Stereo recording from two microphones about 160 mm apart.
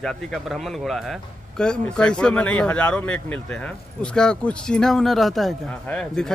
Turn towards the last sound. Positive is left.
turn(degrees=5)  # may be behind; listen again after turning